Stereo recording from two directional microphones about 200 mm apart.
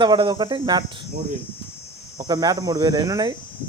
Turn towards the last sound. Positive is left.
turn(degrees=-20)  # may be behind; listen again after turning